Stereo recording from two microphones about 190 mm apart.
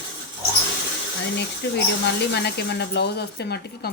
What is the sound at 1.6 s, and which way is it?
Speech, 60° left (ahead or behind).